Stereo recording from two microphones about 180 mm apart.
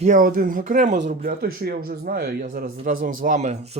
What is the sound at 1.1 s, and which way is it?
Speech, 55° right (ahead or behind).